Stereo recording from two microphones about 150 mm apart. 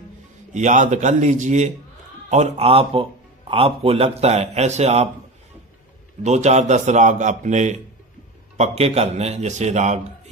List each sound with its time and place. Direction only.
0.5 s a man's voice: 55° right (ahead or behind)
6.2 s a man's voice: 50° right (ahead or behind)